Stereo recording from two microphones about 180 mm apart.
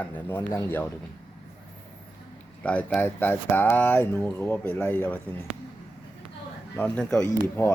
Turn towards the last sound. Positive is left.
turn(degrees=10)  # may be behind; listen again after turning